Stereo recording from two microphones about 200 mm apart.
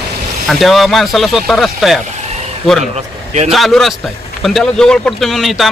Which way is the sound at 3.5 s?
Centre (ahead or behind).